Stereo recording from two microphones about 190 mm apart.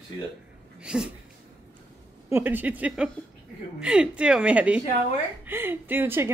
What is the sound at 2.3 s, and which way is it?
A woman's voice, 10° right (ahead or behind).